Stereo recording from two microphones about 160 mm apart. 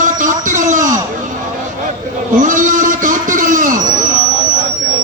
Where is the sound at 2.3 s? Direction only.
55° right (ahead or behind).